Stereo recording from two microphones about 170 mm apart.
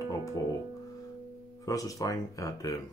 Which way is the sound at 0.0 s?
20° left (ahead or behind).